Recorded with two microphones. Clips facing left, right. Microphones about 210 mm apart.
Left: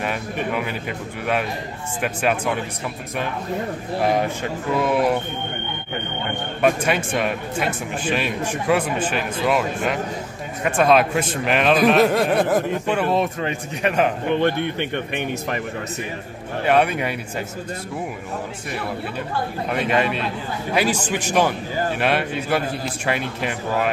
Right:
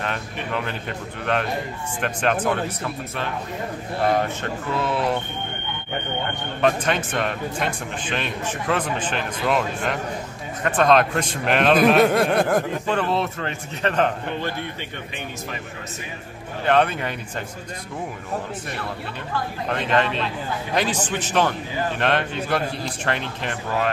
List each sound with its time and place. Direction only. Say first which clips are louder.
0.0 s a man's voice: left 4 dB; 10° left (ahead or behind)
4.0 s a man's voice: left 1 dB; 10° left (ahead or behind)
6.6 s a man's voice: left 1 dB; 10° left (ahead or behind)
14.3 s speech: left 8 dB; 60° left (ahead or behind)
16.6 s a man's voice: left 1 dB; 10° left (ahead or behind)
19.7 s a man's voice: left 1 dB; 10° left (ahead or behind)